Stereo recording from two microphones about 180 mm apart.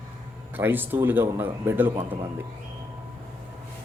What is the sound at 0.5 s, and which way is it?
Speech, 10° right (ahead or behind).